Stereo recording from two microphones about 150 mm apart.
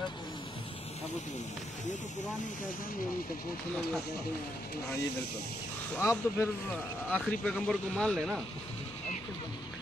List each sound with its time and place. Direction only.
5.9 s speech: 15° left (ahead or behind)
7.1 s speech: 5° left (ahead or behind)